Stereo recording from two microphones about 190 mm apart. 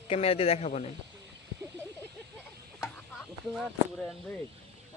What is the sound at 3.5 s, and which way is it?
Speech, centre (ahead or behind).